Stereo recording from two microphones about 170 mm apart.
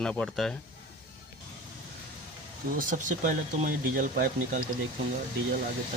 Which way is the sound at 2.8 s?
50° right (ahead or behind).